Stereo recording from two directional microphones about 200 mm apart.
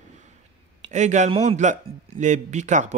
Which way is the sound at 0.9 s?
35° right (ahead or behind).